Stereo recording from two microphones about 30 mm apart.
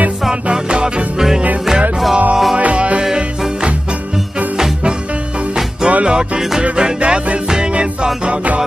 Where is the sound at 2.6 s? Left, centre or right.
Right.